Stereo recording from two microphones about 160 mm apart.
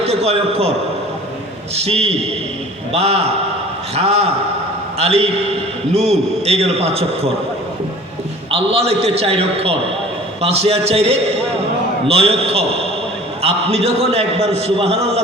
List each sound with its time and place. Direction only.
0.0 s a man's voice: 40° right (ahead or behind)
1.7 s a man's voice: 40° right (ahead or behind)
8.4 s a man's voice: 40° right (ahead or behind)